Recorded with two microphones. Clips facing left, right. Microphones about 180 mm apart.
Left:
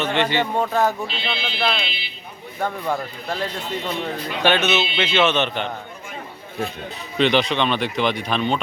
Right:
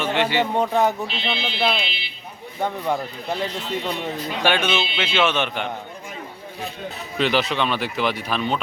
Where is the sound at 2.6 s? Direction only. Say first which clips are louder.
Right 1 dB; 20° right (ahead or behind).